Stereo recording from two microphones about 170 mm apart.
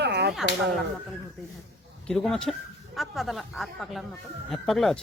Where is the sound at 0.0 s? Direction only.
75° right (ahead or behind).